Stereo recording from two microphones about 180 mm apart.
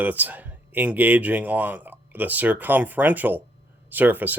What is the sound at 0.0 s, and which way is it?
Speech, 10° right (ahead or behind).